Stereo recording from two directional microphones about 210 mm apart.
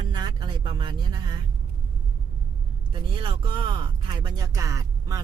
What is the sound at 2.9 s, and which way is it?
Speech, 25° right (ahead or behind).